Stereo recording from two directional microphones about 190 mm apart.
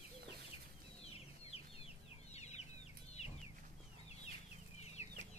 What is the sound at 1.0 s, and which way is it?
Chicken, 30° left (ahead or behind).